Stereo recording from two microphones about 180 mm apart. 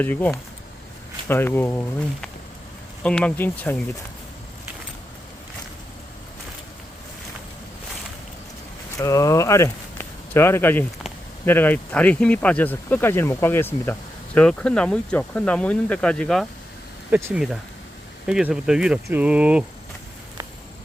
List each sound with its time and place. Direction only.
0.0 s speech: 10° left (ahead or behind)
3.0 s speech: 5° left (ahead or behind)
9.0 s speech: 20° left (ahead or behind); by 16.5 s 5° left (ahead or behind)
17.1 s speech: 10° right (ahead or behind)